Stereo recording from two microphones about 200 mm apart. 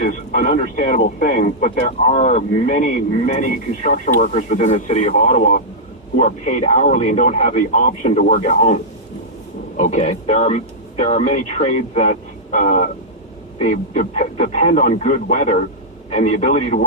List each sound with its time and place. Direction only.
0.0 s radio: 40° left (ahead or behind)
0.6 s speech: 40° left (ahead or behind)